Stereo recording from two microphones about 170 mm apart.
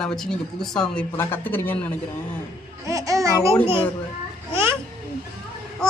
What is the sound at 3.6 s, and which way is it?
Speech, 30° left (ahead or behind).